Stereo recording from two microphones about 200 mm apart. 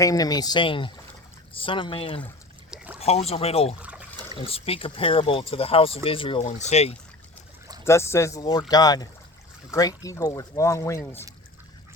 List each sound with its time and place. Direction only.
0.0 s speech: 20° left (ahead or behind)
2.6 s boat: 5° right (ahead or behind)
3.0 s speech: 30° left (ahead or behind)
3.8 s trickle: 5° right (ahead or behind)
4.4 s speech: 30° left (ahead or behind)
7.9 s speech: 15° left (ahead or behind)